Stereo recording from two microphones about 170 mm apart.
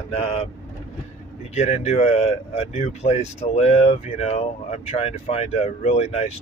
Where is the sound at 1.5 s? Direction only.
40° left (ahead or behind).